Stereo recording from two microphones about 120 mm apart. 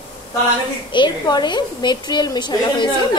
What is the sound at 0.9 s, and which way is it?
Speech, 35° left (ahead or behind).